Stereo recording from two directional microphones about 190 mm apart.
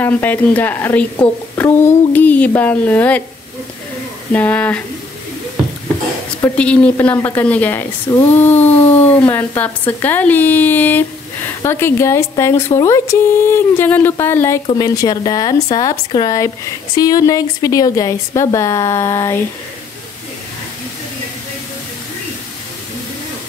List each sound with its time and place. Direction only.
0.0 s speech: 10° left (ahead or behind)
4.3 s speech: 10° left (ahead or behind)
6.4 s speech: 5° left (ahead or behind)